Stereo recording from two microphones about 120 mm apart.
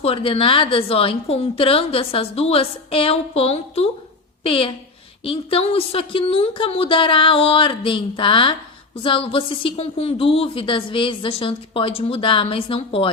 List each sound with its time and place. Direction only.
0.0 s speech: 50° left (ahead or behind)